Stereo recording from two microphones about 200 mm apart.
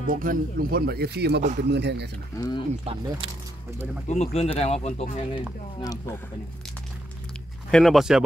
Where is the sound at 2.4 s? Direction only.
20° left (ahead or behind).